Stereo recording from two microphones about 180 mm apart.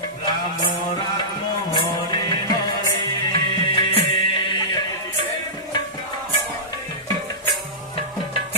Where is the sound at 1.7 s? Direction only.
20° left (ahead or behind).